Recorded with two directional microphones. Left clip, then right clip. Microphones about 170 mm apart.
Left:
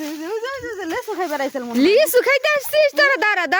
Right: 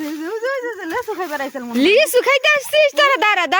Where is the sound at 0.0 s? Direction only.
15° left (ahead or behind).